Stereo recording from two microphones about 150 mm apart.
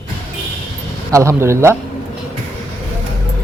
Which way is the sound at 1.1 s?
20° right (ahead or behind).